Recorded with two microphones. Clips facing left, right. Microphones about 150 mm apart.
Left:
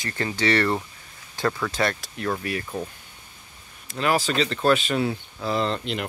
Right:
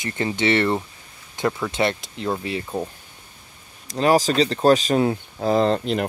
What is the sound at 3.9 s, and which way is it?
Speech, 40° right (ahead or behind).